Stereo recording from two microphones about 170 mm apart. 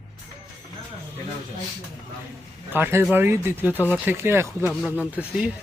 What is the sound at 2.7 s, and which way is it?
Speech, 10° right (ahead or behind).